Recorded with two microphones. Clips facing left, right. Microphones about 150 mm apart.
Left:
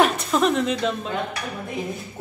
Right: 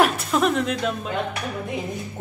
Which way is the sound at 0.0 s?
Centre (ahead or behind).